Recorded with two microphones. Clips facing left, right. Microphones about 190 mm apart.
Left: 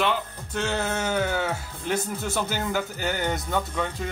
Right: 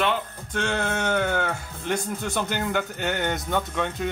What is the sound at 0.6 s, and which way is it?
Speech, 5° left (ahead or behind).